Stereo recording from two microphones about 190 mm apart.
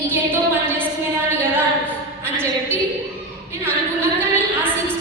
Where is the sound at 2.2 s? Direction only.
10° right (ahead or behind).